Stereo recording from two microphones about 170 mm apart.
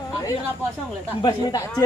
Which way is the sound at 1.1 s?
20° left (ahead or behind).